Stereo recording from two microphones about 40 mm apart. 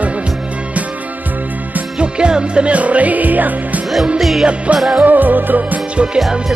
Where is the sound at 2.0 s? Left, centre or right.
Right.